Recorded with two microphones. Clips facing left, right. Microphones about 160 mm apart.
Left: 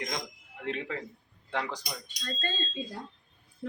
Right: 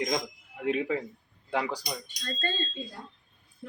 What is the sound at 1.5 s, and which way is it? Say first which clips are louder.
Speech: right 4 dB; 10° right (ahead or behind).